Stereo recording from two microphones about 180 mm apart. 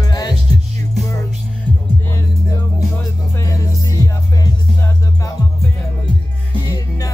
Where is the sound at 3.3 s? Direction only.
15° left (ahead or behind).